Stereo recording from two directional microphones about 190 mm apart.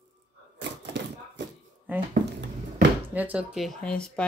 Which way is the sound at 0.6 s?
65° right (ahead or behind).